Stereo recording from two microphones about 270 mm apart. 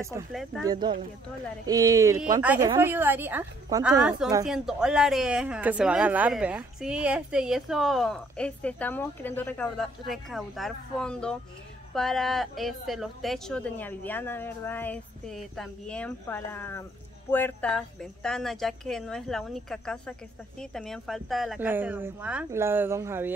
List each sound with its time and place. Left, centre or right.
0.3 s speech: centre
0.7 s speech: centre